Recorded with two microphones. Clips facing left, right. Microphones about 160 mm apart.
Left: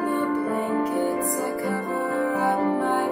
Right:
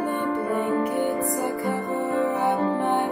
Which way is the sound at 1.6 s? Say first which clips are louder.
Even; 20° right (ahead or behind).